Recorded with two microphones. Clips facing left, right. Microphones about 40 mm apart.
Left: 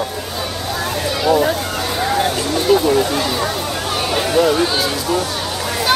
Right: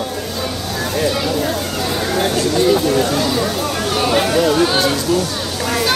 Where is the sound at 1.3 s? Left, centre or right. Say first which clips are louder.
Left 5 dB; centre.